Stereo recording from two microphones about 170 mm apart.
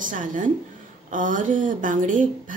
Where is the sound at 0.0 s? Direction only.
50° right (ahead or behind).